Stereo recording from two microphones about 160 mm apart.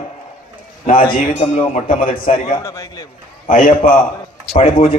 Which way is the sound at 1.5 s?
45° left (ahead or behind).